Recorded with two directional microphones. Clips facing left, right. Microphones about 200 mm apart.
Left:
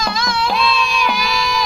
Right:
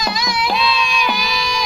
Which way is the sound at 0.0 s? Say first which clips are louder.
Left 1 dB; 15° right (ahead or behind).